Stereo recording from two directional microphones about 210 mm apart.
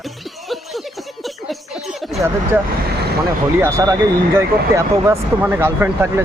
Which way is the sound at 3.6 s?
15° right (ahead or behind).